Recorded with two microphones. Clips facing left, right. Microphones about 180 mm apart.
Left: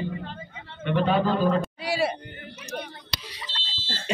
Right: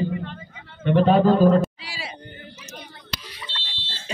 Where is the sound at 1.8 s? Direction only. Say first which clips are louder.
Left 12 dB; 55° left (ahead or behind).